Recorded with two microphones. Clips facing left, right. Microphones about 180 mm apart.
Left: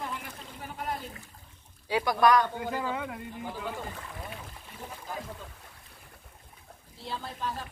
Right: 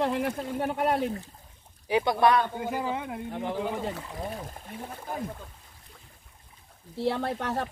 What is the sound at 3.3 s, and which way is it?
Speech, 80° right.